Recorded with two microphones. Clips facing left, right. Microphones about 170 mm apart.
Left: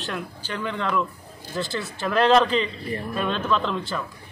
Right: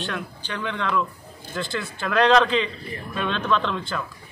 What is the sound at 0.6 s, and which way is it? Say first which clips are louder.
Speech: even; 40° left (ahead or behind).